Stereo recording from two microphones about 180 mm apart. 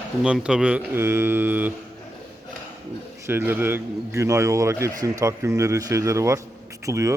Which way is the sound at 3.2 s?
10° right (ahead or behind).